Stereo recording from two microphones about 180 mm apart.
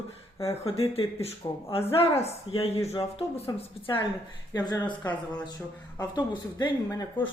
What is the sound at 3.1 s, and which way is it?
A woman's voice, 35° left (ahead or behind).